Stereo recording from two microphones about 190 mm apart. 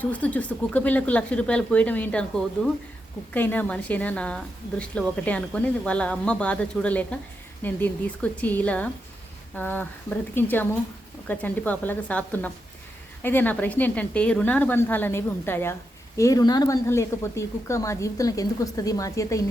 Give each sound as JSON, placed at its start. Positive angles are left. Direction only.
{"t": 0.0, "sound": "a woman's voice", "side_deg": 10}
{"t": 3.3, "sound": "a woman's voice", "side_deg": 10}